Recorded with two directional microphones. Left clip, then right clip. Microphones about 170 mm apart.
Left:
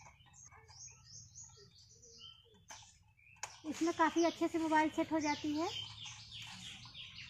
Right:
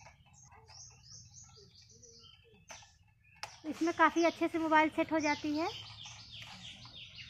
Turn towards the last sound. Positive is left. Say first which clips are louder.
# right 4 dB
turn(degrees=5)  # may be behind; listen again after turning